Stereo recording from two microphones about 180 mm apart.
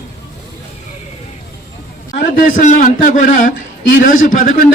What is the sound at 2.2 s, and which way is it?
A man's voice, 50° left (ahead or behind).